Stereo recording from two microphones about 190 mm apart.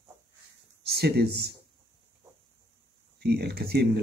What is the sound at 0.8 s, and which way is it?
Speech, 60° right (ahead or behind).